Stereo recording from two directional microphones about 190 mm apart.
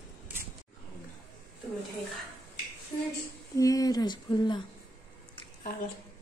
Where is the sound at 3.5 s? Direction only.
20° left (ahead or behind).